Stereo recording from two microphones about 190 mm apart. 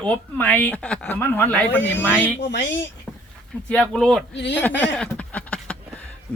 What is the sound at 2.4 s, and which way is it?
Speech, 70° left (ahead or behind).